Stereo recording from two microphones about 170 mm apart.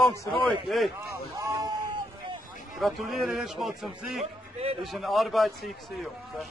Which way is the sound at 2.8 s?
Centre (ahead or behind).